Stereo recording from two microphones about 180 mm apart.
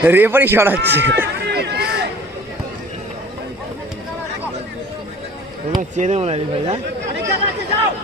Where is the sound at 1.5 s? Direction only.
65° right (ahead or behind).